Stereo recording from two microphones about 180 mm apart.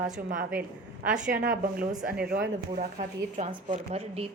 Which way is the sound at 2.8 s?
45° right (ahead or behind).